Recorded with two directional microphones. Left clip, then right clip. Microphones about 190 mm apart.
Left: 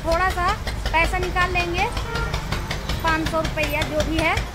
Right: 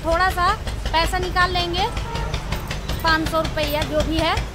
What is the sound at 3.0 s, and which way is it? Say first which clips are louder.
Speech: right 3 dB; 10° right (ahead or behind).